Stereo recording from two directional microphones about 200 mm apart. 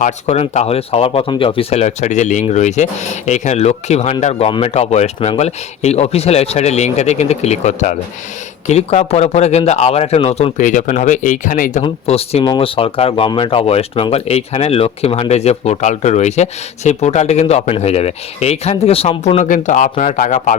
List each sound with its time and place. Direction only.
0.0 s speech: 35° left (ahead or behind)
11.8 s speech: 30° left (ahead or behind)